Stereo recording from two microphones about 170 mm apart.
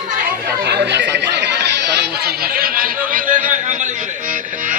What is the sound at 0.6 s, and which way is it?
Speech, 80° right.